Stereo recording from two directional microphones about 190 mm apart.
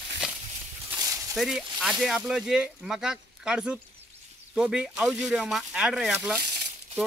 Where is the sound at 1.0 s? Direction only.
15° right (ahead or behind).